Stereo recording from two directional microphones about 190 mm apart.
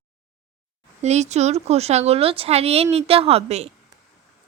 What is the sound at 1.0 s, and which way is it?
Speech, 35° right (ahead or behind).